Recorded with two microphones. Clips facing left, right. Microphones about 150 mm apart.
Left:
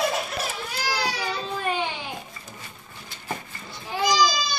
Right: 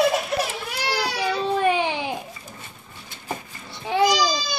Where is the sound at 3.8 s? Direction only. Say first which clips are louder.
Right 6 dB; 70° right (ahead or behind).